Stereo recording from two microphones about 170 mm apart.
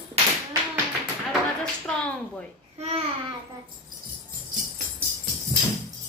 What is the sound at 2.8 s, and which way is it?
Babbling, 40° right (ahead or behind).